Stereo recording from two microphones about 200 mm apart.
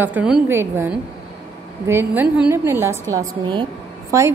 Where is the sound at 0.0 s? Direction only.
5° right (ahead or behind).